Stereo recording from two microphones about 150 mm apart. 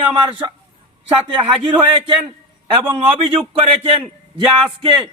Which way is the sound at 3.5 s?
40° right (ahead or behind).